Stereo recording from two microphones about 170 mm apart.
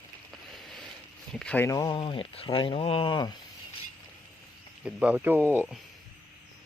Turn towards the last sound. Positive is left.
turn(degrees=-10)  # may be behind; listen again after turning